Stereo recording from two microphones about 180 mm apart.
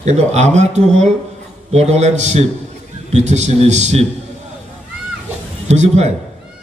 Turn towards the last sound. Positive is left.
turn(degrees=-40)  # may be behind; listen again after turning